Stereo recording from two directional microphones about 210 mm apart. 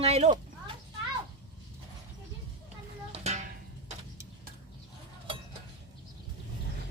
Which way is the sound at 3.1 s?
30° right (ahead or behind).